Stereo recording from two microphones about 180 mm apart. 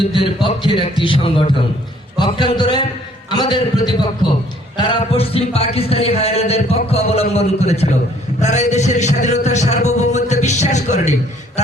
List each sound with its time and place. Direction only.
0.0 s a man's voice: 30° left (ahead or behind)